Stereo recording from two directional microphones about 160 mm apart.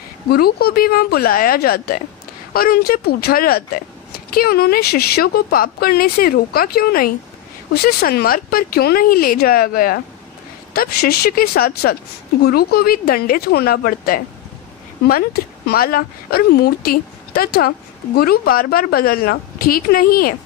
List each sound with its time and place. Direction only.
0.3 s speech: 75° left (ahead or behind)